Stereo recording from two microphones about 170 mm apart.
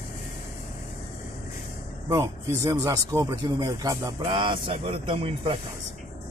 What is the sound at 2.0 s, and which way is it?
Speech, 20° right (ahead or behind).